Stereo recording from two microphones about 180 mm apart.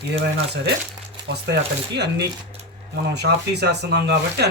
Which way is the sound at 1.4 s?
70° right (ahead or behind).